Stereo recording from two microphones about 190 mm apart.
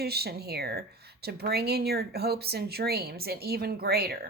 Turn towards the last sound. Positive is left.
turn(degrees=-55)  # may be behind; listen again after turning